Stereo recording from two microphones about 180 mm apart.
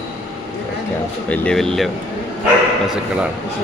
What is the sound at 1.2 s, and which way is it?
Speech, 5° left (ahead or behind).